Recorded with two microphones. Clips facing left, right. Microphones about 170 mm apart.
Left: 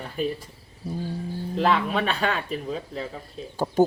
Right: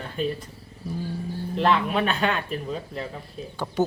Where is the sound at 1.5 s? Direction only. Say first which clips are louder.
Right 1 dB; centre (ahead or behind).